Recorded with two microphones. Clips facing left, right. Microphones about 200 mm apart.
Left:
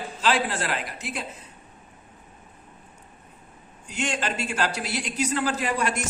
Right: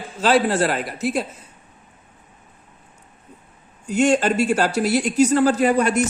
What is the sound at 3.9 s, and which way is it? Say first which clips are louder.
Speech: right 12 dB; 45° right (ahead or behind).